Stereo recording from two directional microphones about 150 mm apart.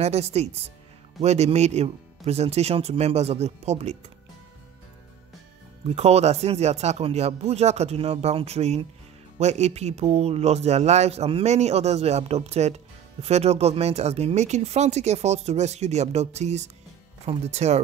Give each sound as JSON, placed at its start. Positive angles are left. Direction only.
{"t": 0.0, "sound": "speech", "side_deg": -45}
{"t": 5.9, "sound": "speech", "side_deg": -45}